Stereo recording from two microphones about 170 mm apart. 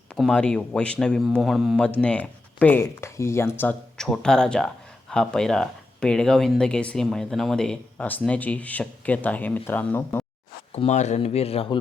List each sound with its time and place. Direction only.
0.2 s speech: 5° left (ahead or behind)
10.7 s speech: 40° left (ahead or behind)